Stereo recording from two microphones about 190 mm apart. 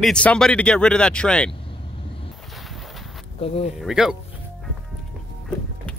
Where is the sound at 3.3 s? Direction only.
30° left (ahead or behind).